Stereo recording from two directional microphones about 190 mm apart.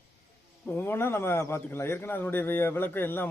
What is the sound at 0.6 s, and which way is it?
A man's voice, 10° left (ahead or behind).